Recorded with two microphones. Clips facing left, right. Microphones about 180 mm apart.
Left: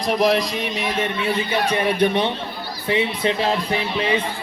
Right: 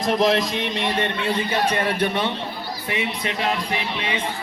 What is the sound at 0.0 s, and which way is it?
A man's voice, centre (ahead or behind).